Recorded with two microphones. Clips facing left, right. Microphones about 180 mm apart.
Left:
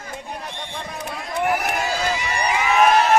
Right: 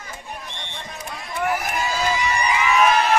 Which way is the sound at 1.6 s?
65° left (ahead or behind).